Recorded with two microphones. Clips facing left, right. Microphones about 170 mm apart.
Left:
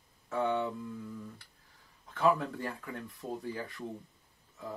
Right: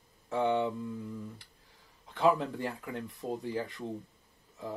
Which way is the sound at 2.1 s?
20° right (ahead or behind).